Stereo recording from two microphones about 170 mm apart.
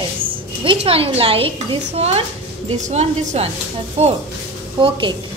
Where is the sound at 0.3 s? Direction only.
30° right (ahead or behind).